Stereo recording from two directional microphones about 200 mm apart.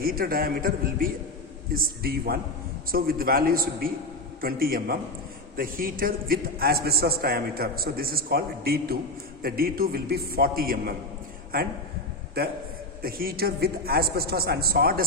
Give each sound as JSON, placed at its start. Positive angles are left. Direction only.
{"t": 0.0, "sound": "a man's voice", "side_deg": -45}